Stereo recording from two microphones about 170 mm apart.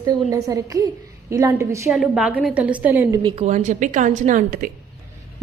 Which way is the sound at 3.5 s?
45° right (ahead or behind).